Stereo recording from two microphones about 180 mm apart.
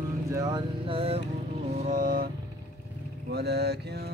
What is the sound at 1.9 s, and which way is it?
Vehicle, 50° right (ahead or behind).